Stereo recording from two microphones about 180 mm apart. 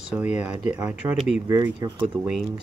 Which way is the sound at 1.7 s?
25° right (ahead or behind).